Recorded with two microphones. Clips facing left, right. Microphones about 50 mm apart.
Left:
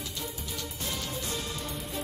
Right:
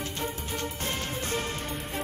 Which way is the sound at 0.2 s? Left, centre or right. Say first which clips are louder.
Right 6 dB; right.